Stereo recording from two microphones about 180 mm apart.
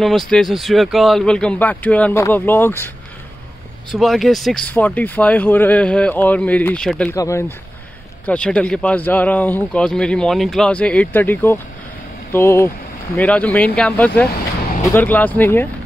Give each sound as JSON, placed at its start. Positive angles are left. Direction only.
{"t": 0.0, "sound": "speech", "side_deg": 0}
{"t": 3.9, "sound": "speech", "side_deg": 0}
{"t": 7.2, "sound": "speech", "side_deg": 15}